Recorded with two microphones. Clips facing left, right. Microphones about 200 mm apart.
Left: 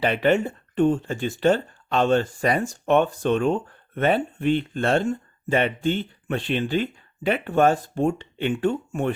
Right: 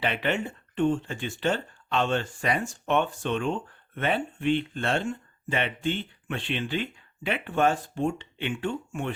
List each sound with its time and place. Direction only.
0.0 s speech: 40° left (ahead or behind)